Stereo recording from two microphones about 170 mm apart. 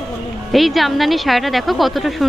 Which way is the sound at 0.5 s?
Centre (ahead or behind).